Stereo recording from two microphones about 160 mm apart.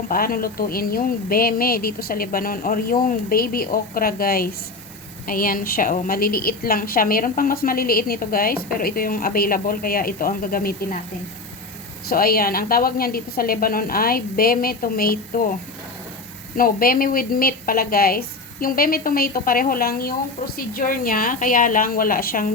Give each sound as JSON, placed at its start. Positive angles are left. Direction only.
{"t": 0.1, "sound": "a woman's voice", "side_deg": 65}
{"t": 12.0, "sound": "a woman's voice", "side_deg": 70}
{"t": 16.6, "sound": "a woman's voice", "side_deg": 65}